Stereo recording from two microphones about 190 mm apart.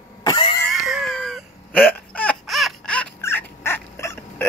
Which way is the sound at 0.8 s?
Centre (ahead or behind).